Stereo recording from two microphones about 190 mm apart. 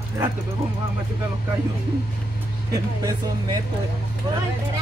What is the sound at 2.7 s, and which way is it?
Speech, 20° right (ahead or behind).